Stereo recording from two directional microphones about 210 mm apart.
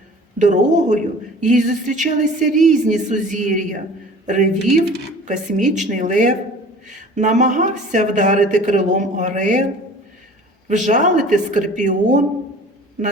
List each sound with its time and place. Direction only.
0.3 s a woman's voice: 35° right (ahead or behind)
10.7 s a woman's voice: 35° right (ahead or behind)